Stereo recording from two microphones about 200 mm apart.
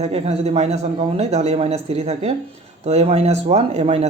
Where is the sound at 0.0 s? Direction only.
30° right (ahead or behind).